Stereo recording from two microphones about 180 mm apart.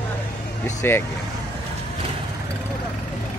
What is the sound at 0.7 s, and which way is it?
Speech, 15° left (ahead or behind).